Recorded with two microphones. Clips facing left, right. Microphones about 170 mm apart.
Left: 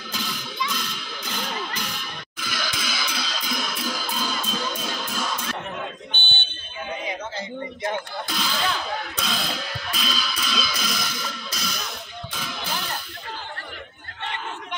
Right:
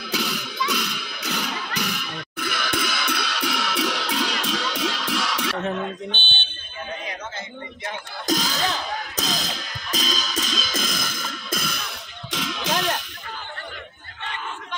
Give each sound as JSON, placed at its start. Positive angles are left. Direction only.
{"t": 0.1, "sound": "music", "side_deg": -75}
{"t": 6.1, "sound": "fire alarm", "side_deg": 15}
{"t": 8.3, "sound": "music", "side_deg": -40}
{"t": 12.3, "sound": "music", "side_deg": -90}